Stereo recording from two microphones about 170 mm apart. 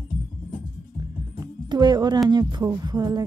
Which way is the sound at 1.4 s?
25° right (ahead or behind).